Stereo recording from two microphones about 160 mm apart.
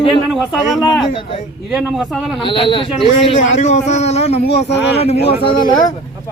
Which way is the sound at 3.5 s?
45° left (ahead or behind).